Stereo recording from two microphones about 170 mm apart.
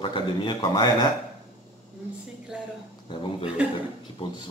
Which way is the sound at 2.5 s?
5° right (ahead or behind).